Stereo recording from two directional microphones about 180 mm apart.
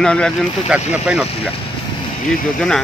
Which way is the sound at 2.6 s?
5° left (ahead or behind).